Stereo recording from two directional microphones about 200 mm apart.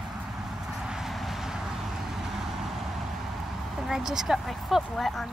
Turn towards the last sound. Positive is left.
turn(degrees=0)  # may be behind; listen again after turning